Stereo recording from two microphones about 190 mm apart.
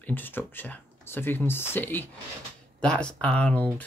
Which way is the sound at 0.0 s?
10° left (ahead or behind).